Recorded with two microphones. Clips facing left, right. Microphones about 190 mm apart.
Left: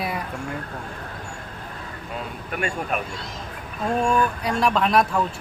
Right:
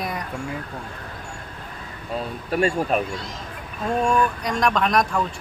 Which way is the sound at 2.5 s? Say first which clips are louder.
Right 6 dB; 30° right (ahead or behind).